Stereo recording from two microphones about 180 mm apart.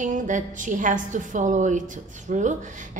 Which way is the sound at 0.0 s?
45° right (ahead or behind).